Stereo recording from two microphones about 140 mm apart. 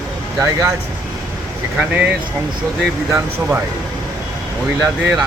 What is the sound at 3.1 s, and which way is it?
Speech, 15° right (ahead or behind).